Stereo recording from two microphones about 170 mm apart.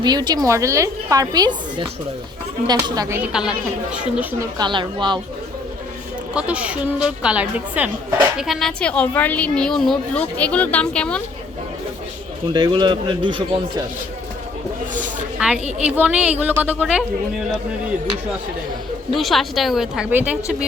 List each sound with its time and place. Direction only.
0.0 s speech: 25° right (ahead or behind)
4.2 s a woman's voice: 10° right (ahead or behind)
4.5 s speech: 25° right (ahead or behind)
6.3 s a woman's voice: 5° right (ahead or behind)
12.5 s speech: 25° right (ahead or behind)
15.4 s a woman's voice: 5° right (ahead or behind)
19.1 s a woman's voice: centre (ahead or behind)